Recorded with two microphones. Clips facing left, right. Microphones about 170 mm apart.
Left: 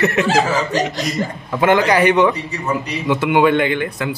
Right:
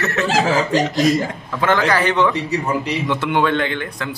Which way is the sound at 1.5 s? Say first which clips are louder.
Left 3 dB; 15° left (ahead or behind).